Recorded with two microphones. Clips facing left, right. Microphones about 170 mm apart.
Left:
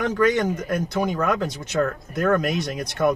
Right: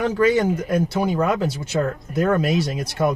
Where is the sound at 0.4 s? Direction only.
10° right (ahead or behind).